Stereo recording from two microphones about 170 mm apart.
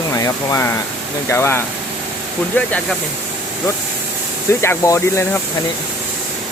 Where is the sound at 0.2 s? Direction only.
15° left (ahead or behind).